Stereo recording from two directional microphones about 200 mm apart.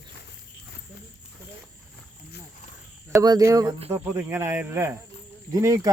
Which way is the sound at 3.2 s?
15° right (ahead or behind).